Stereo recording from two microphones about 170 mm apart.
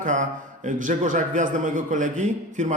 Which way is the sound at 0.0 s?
45° right (ahead or behind).